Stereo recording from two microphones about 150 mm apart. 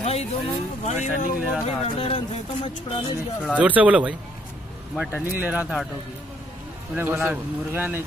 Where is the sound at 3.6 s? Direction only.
10° right (ahead or behind).